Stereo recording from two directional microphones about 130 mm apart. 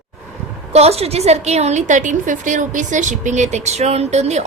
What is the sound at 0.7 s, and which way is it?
A woman's voice, 50° right (ahead or behind).